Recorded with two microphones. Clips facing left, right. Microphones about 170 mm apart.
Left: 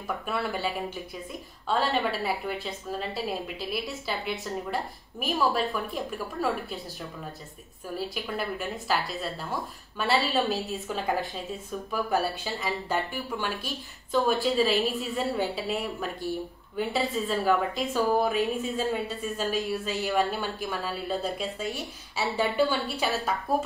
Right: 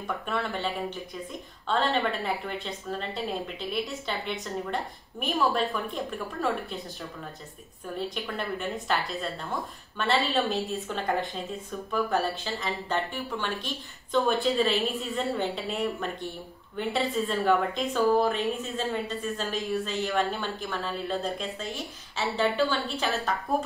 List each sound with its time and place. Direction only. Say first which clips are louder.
0.3 s a woman's voice: left 1 dB; 5° left (ahead or behind)
7.9 s a woman's voice: even; 5° left (ahead or behind)